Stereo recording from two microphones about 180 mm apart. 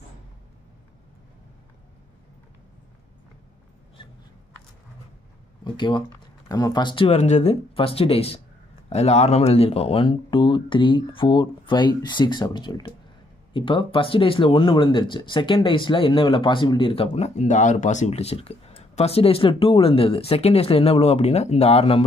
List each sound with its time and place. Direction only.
5.6 s speech: 25° left (ahead or behind)